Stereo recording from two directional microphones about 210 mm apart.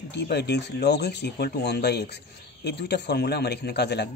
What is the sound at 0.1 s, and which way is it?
A man's voice, 50° left (ahead or behind).